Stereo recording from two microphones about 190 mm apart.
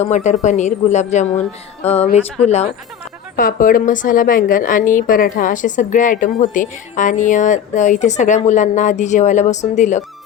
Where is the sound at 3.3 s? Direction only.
45° left (ahead or behind).